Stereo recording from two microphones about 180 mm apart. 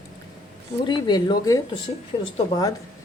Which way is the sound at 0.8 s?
25° left (ahead or behind).